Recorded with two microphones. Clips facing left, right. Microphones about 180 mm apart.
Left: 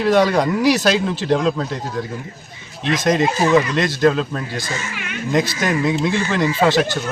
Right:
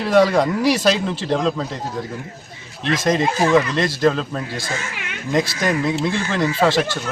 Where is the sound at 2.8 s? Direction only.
30° right (ahead or behind).